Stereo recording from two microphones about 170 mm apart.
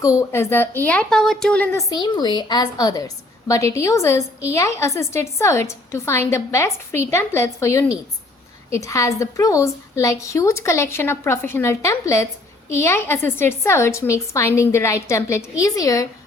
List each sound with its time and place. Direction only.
0.0 s a woman's voice: 20° left (ahead or behind)
1.9 s a woman's voice: 25° left (ahead or behind)